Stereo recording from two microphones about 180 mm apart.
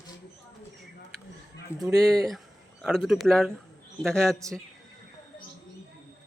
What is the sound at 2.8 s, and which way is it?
Speech, centre (ahead or behind).